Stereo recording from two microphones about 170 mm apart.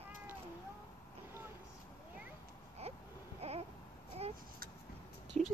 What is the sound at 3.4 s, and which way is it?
Babbling, 40° right (ahead or behind).